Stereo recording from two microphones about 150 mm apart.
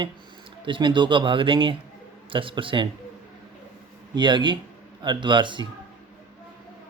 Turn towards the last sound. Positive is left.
turn(degrees=-30)  # may be behind; listen again after turning